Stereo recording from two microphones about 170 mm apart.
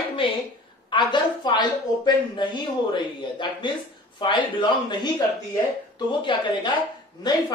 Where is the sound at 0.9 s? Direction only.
25° left (ahead or behind).